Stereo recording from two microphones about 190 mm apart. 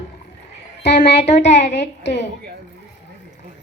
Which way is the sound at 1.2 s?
35° left (ahead or behind).